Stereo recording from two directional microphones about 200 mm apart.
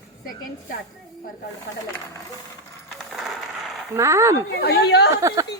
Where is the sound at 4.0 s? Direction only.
15° right (ahead or behind).